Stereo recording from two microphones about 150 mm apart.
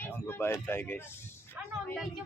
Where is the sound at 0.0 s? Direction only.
15° left (ahead or behind).